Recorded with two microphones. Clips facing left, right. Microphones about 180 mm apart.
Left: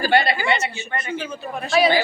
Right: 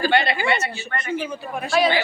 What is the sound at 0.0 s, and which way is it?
Speech, 35° left (ahead or behind).